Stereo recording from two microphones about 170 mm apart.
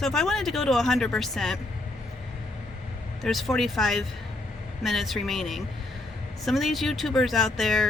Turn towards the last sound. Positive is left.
turn(degrees=0)  # may be behind; listen again after turning